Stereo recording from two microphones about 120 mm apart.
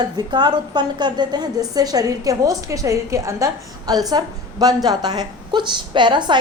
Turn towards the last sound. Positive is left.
turn(degrees=-40)  # may be behind; listen again after turning